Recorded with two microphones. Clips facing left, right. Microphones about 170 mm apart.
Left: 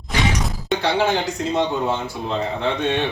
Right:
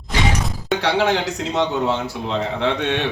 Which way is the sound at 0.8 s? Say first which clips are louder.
Right 1 dB; 85° right.